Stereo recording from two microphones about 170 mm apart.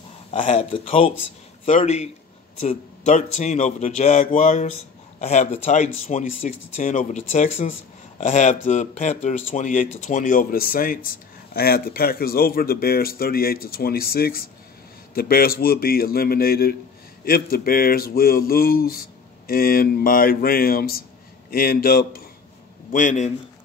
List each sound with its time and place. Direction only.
0.3 s speech: 35° left (ahead or behind); by 22.2 s 60° left (ahead or behind)
22.8 s speech: 50° left (ahead or behind)